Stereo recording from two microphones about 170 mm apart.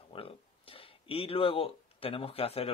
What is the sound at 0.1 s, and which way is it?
Speech, 35° left (ahead or behind).